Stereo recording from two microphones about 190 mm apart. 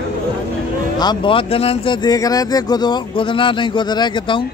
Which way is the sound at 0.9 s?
25° left (ahead or behind).